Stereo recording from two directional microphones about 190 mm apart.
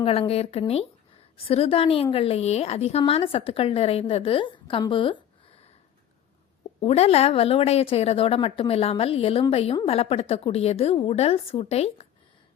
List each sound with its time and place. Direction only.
0.0 s a woman's voice: 30° left (ahead or behind)
6.7 s a woman's voice: 35° left (ahead or behind)